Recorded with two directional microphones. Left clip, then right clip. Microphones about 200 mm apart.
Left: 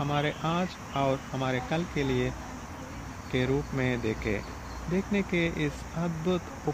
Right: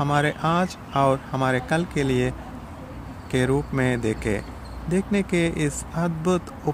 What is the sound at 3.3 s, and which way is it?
Speech, 15° right (ahead or behind).